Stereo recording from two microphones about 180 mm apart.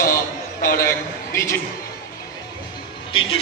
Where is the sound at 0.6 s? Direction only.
50° left (ahead or behind).